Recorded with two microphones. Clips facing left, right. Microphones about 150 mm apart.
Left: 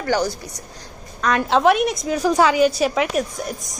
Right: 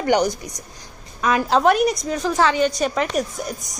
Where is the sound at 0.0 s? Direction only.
15° right (ahead or behind).